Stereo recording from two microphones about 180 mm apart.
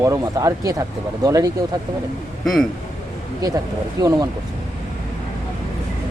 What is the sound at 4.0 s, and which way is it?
Speech, 20° right (ahead or behind).